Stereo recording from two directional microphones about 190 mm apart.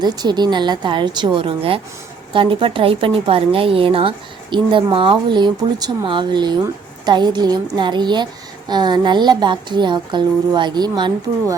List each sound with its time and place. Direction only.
0.0 s a woman's voice: 20° right (ahead or behind)